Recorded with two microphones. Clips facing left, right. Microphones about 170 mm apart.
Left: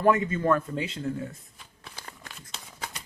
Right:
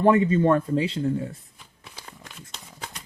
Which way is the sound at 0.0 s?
30° right (ahead or behind).